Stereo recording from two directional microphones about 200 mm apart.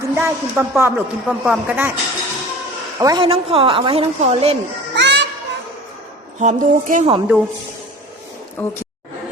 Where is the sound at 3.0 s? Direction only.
20° right (ahead or behind).